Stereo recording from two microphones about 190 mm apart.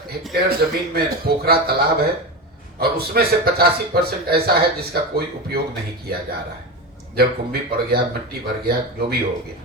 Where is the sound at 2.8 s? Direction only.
55° right (ahead or behind).